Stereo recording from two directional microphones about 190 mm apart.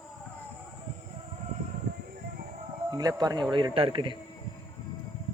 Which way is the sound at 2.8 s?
20° right (ahead or behind).